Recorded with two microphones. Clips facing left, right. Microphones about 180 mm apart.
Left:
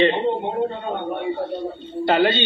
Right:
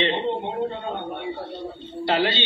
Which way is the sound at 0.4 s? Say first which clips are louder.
Left 3 dB; 50° left (ahead or behind).